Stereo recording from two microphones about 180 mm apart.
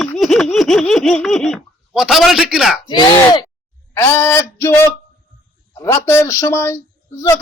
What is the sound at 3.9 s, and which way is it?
Speech, 15° left (ahead or behind).